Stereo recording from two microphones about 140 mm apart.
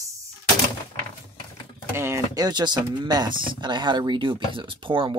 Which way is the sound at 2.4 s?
30° right (ahead or behind).